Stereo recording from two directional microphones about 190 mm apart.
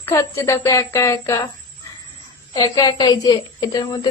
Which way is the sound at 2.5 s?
20° left (ahead or behind).